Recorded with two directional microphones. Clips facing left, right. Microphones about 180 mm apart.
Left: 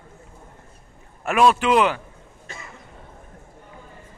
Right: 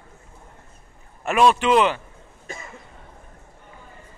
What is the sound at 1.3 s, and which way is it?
Speech, 5° left (ahead or behind).